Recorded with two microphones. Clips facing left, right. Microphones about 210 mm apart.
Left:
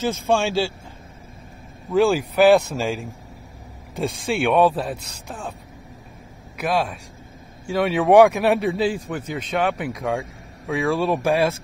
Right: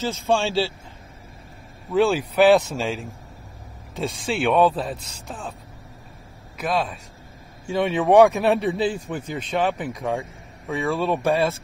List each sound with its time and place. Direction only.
0.3 s speech: 15° left (ahead or behind)
1.9 s speech: centre (ahead or behind)
4.3 s speech: 5° left (ahead or behind)
6.6 s speech: centre (ahead or behind)